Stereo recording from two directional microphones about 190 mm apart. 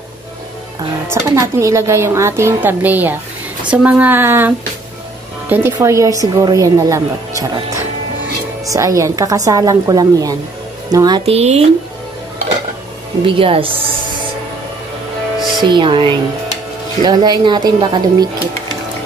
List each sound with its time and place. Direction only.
1.1 s a woman's voice: 15° right (ahead or behind); by 11.6 s 35° right (ahead or behind)
13.2 s speech: 30° right (ahead or behind)
15.6 s speech: 25° right (ahead or behind)